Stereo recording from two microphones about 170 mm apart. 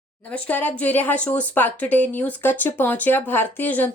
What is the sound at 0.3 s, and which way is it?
Speech, 5° left (ahead or behind).